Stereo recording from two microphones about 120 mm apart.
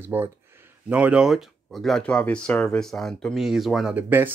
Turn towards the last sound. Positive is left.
turn(degrees=-15)  # may be behind; listen again after turning